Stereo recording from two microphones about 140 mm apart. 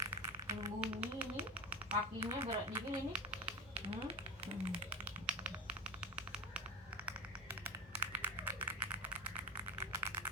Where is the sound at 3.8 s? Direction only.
45° right (ahead or behind).